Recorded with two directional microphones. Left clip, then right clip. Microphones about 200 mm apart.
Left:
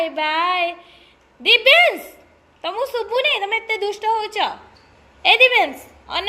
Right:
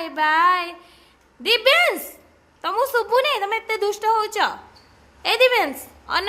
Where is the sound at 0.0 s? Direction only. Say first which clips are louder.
Right 2 dB; 10° right (ahead or behind).